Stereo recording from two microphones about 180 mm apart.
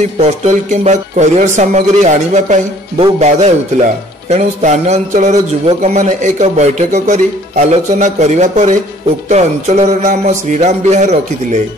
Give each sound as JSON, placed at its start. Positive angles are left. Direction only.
{"t": 0.2, "sound": "a man's voice", "side_deg": -40}